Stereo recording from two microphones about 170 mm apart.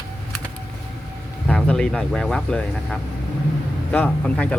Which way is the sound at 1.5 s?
5° left (ahead or behind).